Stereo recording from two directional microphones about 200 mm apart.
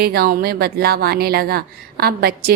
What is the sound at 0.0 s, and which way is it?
Speech, 50° right (ahead or behind).